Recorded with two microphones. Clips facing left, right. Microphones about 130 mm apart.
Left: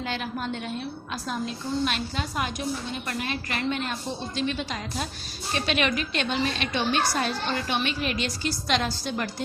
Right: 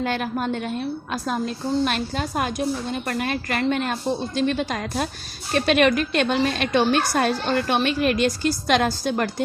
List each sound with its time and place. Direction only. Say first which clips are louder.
0.0 s a woman's voice: right 6 dB; 50° right (ahead or behind)